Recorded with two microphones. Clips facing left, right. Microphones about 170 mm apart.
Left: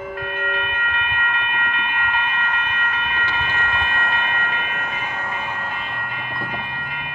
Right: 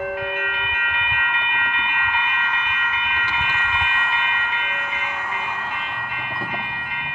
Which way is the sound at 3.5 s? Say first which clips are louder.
Left 1 dB; 40° left (ahead or behind).